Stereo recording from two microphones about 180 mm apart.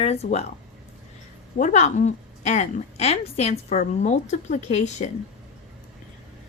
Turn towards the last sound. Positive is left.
turn(degrees=40)  # may be behind; listen again after turning